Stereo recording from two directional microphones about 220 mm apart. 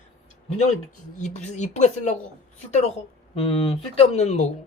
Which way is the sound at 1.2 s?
35° left (ahead or behind).